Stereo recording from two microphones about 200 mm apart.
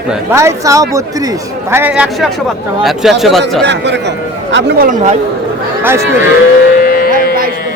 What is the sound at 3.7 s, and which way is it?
Speech, 60° right (ahead or behind).